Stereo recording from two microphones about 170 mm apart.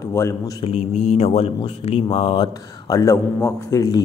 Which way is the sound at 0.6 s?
40° left (ahead or behind).